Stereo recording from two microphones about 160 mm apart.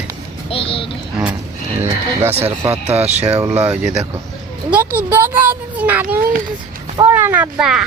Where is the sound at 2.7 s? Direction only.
40° right (ahead or behind).